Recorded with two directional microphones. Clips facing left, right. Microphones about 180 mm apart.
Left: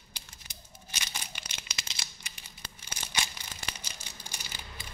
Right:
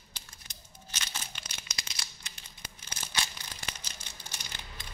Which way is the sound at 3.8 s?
10° left (ahead or behind).